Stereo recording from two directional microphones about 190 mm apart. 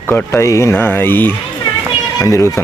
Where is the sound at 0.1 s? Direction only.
15° left (ahead or behind).